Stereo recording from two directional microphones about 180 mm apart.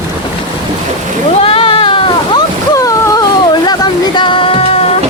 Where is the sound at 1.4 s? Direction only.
30° left (ahead or behind).